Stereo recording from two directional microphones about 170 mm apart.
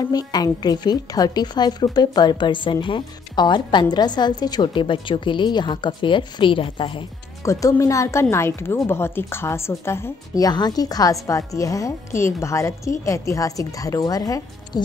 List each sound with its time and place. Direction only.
0.0 s a woman's voice: 20° left (ahead or behind)
7.4 s a woman's voice: 20° left (ahead or behind)